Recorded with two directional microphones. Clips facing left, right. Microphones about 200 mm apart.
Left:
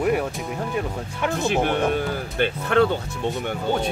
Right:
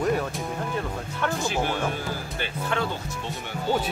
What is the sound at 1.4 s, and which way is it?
Speech, 60° left (ahead or behind).